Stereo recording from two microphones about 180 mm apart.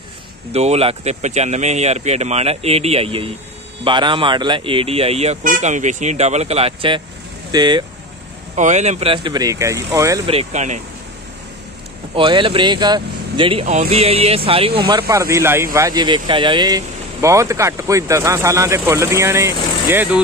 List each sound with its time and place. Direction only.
0.5 s speech: 35° right (ahead or behind)
8.5 s speech: 40° right (ahead or behind); by 10.2 s 15° right (ahead or behind)
10.2 s speech: 35° right (ahead or behind)
12.2 s speech: 30° right (ahead or behind); by 20.2 s 10° right (ahead or behind)